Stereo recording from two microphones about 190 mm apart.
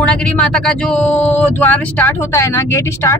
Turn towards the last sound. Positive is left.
turn(degrees=15)  # may be behind; listen again after turning